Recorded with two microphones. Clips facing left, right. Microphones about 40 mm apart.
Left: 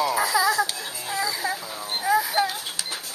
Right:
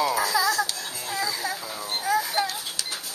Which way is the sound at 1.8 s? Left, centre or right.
Centre.